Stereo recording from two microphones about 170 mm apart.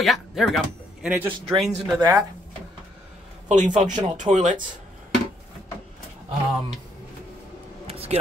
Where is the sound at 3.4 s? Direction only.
45° right (ahead or behind).